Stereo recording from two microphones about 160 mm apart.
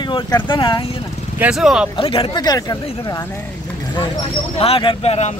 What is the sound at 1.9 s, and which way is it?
Speech, 35° left (ahead or behind).